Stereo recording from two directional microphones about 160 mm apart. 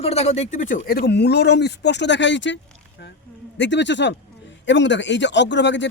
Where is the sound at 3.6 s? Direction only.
90° left.